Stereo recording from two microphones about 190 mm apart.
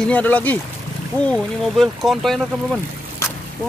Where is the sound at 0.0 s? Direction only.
10° left (ahead or behind).